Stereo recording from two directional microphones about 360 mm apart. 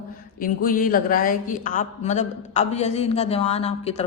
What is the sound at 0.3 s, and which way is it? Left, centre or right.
A woman's voice, left.